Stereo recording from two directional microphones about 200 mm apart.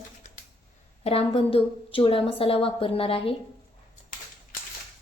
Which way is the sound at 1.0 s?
30° left (ahead or behind).